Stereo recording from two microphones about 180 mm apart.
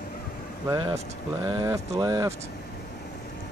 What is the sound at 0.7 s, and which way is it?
Speech, 30° right (ahead or behind).